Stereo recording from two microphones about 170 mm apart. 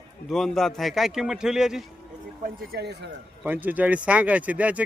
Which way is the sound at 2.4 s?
70° right (ahead or behind).